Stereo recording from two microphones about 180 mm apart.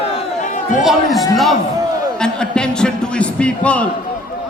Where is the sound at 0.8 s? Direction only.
Centre (ahead or behind).